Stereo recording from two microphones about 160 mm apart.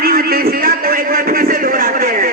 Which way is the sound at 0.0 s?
65° right (ahead or behind).